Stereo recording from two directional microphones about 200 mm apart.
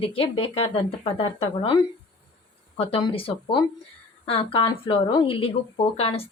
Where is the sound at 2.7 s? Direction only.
30° left (ahead or behind).